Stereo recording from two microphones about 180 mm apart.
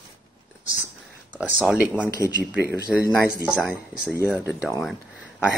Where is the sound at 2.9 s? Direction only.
Centre (ahead or behind).